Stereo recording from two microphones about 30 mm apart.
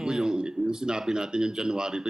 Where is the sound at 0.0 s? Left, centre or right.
Centre.